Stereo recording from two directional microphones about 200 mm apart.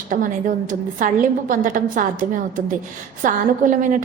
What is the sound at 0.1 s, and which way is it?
A woman's voice, 40° right (ahead or behind).